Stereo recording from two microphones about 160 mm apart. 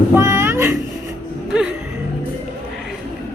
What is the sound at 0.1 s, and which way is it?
Cat, 15° right (ahead or behind).